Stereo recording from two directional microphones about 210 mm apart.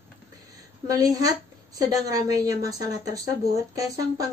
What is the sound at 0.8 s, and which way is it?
A woman's voice, 15° right (ahead or behind).